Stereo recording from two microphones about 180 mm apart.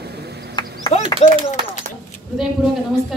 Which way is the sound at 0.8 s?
40° left (ahead or behind).